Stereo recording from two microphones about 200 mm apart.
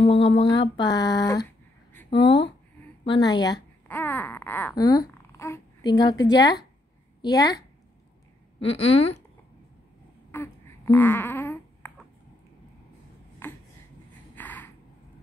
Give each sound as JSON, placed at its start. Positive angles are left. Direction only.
{"t": 0.0, "sound": "a woman's voice", "side_deg": 25}
{"t": 3.8, "sound": "a woman's voice", "side_deg": 10}
{"t": 10.3, "sound": "babbling", "side_deg": 10}
{"t": 13.4, "sound": "a sound", "side_deg": 10}